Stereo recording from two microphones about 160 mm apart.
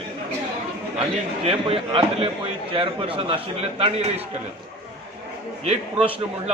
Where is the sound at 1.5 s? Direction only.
35° right (ahead or behind).